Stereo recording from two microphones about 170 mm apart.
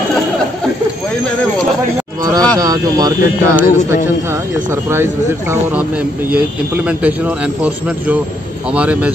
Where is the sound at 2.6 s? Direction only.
20° right (ahead or behind).